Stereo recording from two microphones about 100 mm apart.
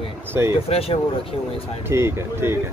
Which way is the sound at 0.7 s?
80° left.